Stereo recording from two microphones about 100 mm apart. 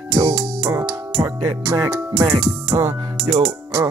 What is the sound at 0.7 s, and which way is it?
Music, 35° right (ahead or behind).